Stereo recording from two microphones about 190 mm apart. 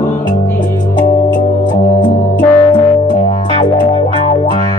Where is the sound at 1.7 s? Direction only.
25° left (ahead or behind).